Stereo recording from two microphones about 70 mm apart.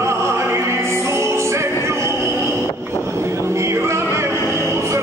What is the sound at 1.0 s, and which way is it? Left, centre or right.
Music, right.